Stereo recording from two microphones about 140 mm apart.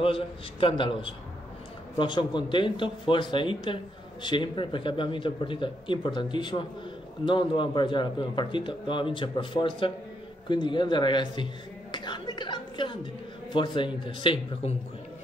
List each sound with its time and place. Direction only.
0.0 s a woman's voice: 40° left (ahead or behind)